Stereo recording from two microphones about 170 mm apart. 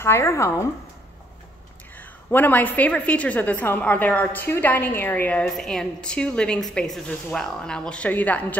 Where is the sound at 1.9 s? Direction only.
10° left (ahead or behind).